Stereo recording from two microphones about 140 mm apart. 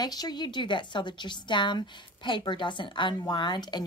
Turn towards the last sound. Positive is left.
turn(degrees=30)  # may be behind; listen again after turning